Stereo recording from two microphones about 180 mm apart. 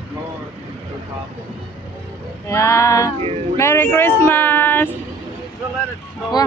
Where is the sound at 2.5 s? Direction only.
15° left (ahead or behind).